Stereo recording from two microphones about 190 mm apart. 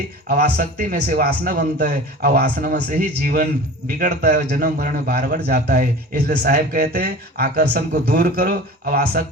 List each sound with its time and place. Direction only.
0.3 s speech: 55° right (ahead or behind)
8.0 s speech: 50° right (ahead or behind)